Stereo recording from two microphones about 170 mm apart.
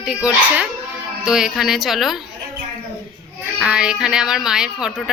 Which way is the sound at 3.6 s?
5° right (ahead or behind).